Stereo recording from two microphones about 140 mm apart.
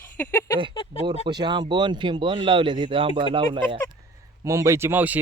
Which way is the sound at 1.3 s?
30° right (ahead or behind).